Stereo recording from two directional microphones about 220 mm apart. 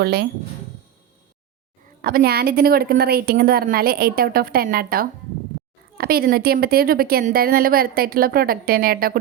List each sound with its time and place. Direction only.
0.0 s speech: 50° right (ahead or behind)
2.0 s speech: 40° right (ahead or behind)